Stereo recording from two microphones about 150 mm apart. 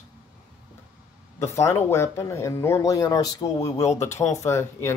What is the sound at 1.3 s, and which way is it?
Speech, 20° left (ahead or behind).